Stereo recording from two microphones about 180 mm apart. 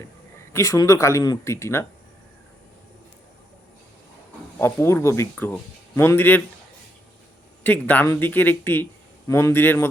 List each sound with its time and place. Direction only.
0.5 s speech: 20° left (ahead or behind)
4.5 s speech: 15° left (ahead or behind)
7.6 s speech: 10° left (ahead or behind)